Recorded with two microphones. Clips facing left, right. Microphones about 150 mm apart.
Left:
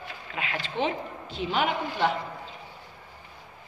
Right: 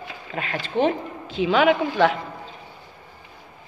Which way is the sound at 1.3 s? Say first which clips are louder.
Right 9 dB; 90° right.